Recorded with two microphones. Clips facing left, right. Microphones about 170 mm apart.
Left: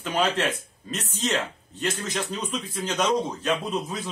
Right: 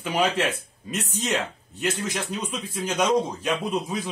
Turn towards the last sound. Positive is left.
turn(degrees=-10)  # may be behind; listen again after turning